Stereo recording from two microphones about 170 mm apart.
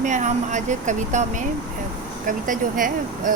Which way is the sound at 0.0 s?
45° right (ahead or behind).